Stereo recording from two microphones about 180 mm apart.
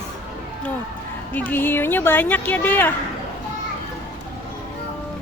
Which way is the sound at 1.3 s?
10° left (ahead or behind).